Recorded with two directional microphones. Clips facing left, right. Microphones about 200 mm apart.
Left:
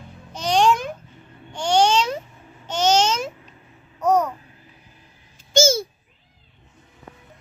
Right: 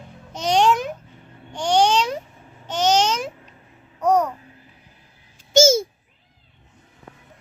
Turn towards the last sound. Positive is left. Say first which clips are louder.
# right 3 dB
turn(degrees=-25)  # may be behind; listen again after turning